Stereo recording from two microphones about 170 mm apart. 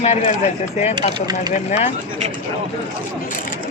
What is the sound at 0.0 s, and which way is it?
Speech, 40° left (ahead or behind).